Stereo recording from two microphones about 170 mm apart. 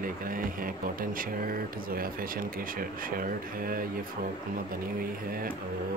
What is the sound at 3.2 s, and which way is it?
Speech, 55° right (ahead or behind).